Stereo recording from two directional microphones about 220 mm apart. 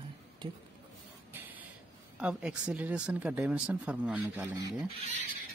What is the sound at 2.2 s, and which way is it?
Speech, 5° right (ahead or behind).